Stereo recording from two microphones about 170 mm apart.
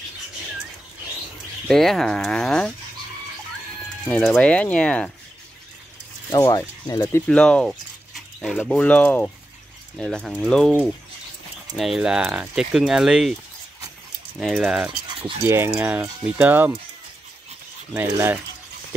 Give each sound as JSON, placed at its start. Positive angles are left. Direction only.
{"t": 1.7, "sound": "speech", "side_deg": 0}
{"t": 4.1, "sound": "speech", "side_deg": 5}
{"t": 6.3, "sound": "speech", "side_deg": 20}
{"t": 11.7, "sound": "speech", "side_deg": 0}
{"t": 14.4, "sound": "speech", "side_deg": 0}
{"t": 14.9, "sound": "a sound", "side_deg": -30}
{"t": 15.4, "sound": "speech", "side_deg": -15}
{"t": 17.9, "sound": "speech", "side_deg": -15}